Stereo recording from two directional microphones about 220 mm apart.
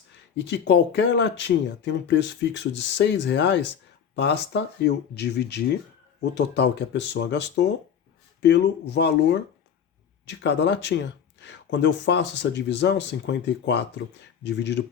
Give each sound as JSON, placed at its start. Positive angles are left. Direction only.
{"t": 0.3, "sound": "speech", "side_deg": 50}